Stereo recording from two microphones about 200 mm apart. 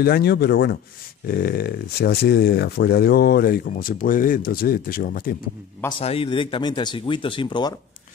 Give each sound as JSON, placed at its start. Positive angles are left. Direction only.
{"t": 0.0, "sound": "speech", "side_deg": 50}
{"t": 5.9, "sound": "speech", "side_deg": 30}